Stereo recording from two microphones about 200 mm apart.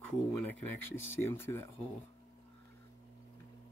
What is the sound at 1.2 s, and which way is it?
Speech, 10° left (ahead or behind).